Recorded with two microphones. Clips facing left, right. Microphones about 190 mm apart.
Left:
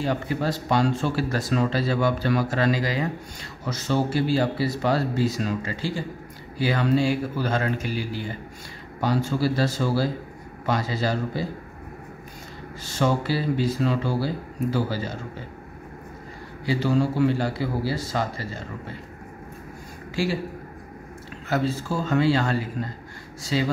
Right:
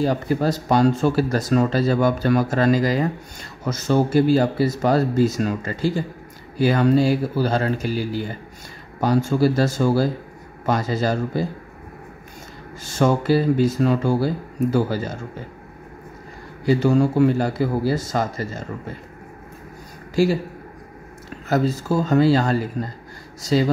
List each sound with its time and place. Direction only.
0.0 s speech: 40° right (ahead or behind)
12.8 s speech: 45° right (ahead or behind)
16.6 s speech: 45° right (ahead or behind)
21.5 s speech: 40° right (ahead or behind)